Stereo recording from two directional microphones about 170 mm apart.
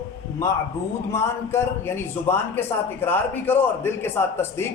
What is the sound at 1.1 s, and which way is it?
A man's voice, 15° left (ahead or behind).